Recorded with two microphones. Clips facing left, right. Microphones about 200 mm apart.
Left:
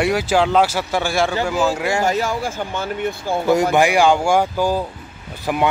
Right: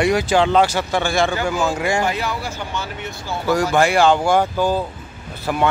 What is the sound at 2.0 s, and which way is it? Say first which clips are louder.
Speech: left 3 dB; 45° left (ahead or behind).